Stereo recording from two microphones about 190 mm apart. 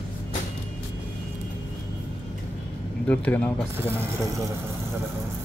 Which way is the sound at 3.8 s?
10° right (ahead or behind).